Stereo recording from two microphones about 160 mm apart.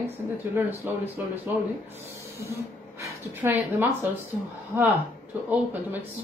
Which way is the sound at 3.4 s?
15° right (ahead or behind).